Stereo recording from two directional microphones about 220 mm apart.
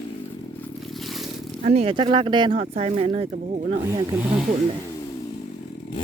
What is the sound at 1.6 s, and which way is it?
Speech, 30° right (ahead or behind).